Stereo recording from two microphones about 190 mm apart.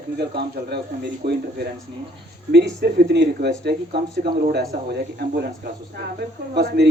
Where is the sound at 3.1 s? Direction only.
65° right (ahead or behind).